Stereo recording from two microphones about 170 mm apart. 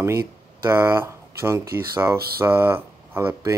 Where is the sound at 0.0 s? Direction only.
15° right (ahead or behind).